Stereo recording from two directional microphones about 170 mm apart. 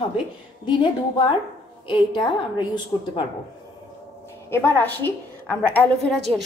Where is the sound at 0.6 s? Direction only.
25° left (ahead or behind).